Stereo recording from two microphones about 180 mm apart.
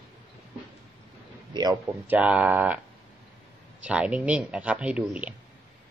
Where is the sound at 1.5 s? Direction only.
25° right (ahead or behind).